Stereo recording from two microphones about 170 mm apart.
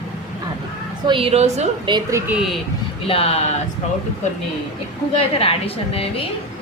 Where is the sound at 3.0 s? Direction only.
35° left (ahead or behind).